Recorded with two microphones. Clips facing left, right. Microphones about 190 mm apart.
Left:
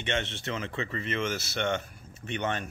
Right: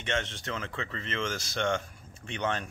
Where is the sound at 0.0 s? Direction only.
10° left (ahead or behind).